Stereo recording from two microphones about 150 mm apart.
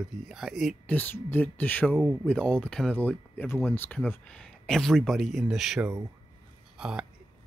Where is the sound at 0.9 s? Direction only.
10° left (ahead or behind).